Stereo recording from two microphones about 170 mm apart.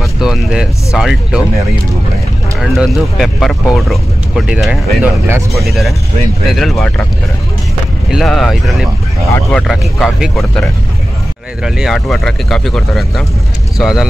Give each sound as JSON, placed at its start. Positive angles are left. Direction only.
{"t": 0.0, "sound": "speech", "side_deg": -5}
{"t": 2.6, "sound": "speech", "side_deg": 0}
{"t": 5.3, "sound": "speech", "side_deg": -15}
{"t": 5.7, "sound": "speech", "side_deg": 0}
{"t": 8.1, "sound": "speech", "side_deg": 0}